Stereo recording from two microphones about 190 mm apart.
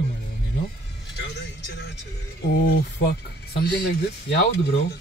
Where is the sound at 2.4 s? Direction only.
65° left (ahead or behind).